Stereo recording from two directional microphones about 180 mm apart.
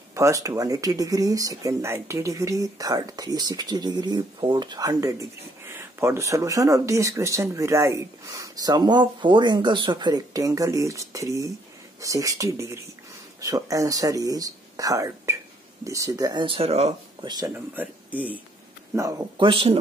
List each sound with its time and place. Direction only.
0.1 s speech: 15° right (ahead or behind); by 17.3 s 35° right (ahead or behind)
17.7 s speech: 10° right (ahead or behind); by 19.8 s 30° right (ahead or behind)